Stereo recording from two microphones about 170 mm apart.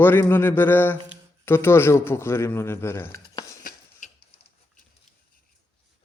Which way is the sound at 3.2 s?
25° left (ahead or behind).